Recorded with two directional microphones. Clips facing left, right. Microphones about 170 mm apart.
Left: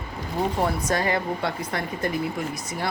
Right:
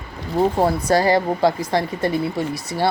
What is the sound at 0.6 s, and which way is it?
Speech, 35° right (ahead or behind).